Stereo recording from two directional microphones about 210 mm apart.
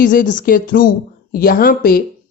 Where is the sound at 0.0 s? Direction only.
40° left (ahead or behind).